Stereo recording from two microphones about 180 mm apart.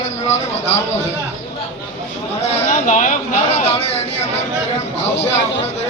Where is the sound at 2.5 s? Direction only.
40° left (ahead or behind).